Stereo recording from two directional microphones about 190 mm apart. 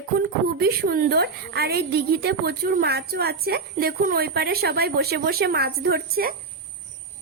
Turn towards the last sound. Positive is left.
turn(degrees=-55)  # may be behind; listen again after turning